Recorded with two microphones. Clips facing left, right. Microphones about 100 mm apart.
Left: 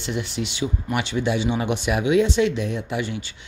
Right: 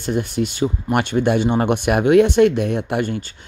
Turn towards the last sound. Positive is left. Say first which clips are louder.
# right 6 dB
turn(degrees=-55)  # may be behind; listen again after turning